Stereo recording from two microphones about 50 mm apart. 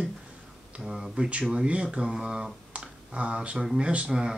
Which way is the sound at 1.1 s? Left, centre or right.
Centre.